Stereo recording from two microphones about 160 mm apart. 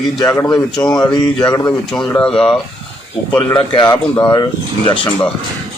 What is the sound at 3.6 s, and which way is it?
Speech, 30° left (ahead or behind).